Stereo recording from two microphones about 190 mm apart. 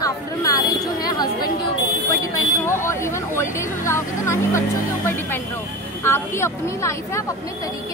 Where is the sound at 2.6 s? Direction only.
15° left (ahead or behind).